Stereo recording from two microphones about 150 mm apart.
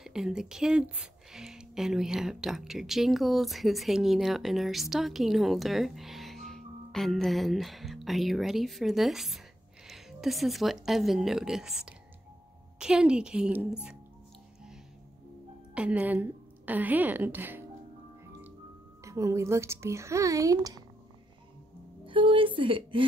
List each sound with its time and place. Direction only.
0.0 s speech: 5° right (ahead or behind)
15.7 s a woman's voice: 10° right (ahead or behind)
19.0 s speech: 20° right (ahead or behind)
22.0 s a woman's voice: 35° right (ahead or behind)